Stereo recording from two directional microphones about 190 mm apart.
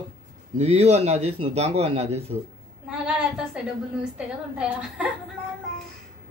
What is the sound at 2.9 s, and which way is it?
Speech, 5° right (ahead or behind).